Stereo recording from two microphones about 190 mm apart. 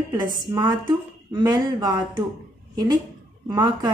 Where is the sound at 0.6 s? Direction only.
20° right (ahead or behind).